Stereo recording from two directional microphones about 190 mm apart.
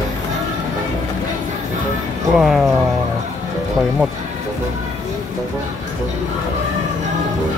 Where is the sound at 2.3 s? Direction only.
Centre (ahead or behind).